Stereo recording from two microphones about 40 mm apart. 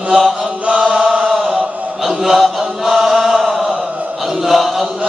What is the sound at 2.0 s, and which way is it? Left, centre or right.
Chant, centre.